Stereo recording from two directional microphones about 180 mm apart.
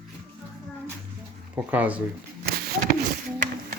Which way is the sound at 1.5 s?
10° right (ahead or behind).